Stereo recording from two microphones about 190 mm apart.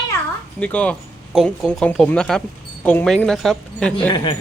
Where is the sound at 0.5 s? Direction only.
5° left (ahead or behind).